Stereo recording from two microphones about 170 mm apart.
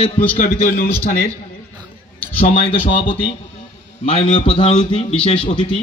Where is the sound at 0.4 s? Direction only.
50° left (ahead or behind).